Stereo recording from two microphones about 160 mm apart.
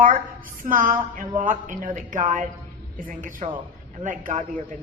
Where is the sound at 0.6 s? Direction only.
55° right (ahead or behind).